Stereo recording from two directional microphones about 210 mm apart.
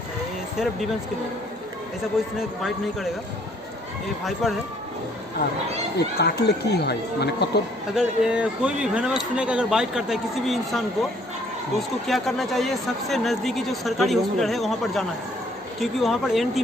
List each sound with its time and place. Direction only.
4.2 s speech: centre (ahead or behind)
5.9 s speech: 50° left (ahead or behind)
7.9 s speech: 5° right (ahead or behind)
12.1 s speech: centre (ahead or behind)